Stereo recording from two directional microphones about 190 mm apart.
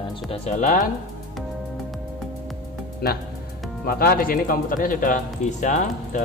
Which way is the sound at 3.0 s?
55° left (ahead or behind).